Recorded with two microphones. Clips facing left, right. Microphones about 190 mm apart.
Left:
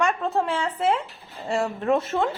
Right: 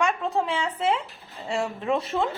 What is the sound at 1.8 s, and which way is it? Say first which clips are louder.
Speech: left 3 dB; centre (ahead or behind).